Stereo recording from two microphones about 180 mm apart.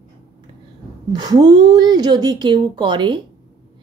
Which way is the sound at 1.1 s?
25° right (ahead or behind).